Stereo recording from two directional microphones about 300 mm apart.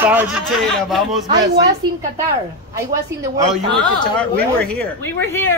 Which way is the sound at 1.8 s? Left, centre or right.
Centre.